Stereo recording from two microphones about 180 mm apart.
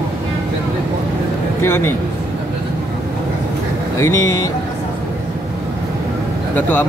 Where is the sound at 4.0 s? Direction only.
15° left (ahead or behind).